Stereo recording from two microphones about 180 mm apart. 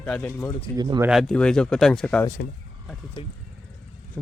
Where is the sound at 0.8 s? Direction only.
20° right (ahead or behind).